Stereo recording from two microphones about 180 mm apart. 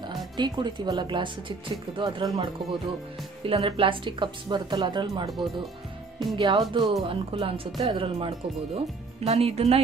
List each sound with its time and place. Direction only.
0.4 s speech: 25° right (ahead or behind)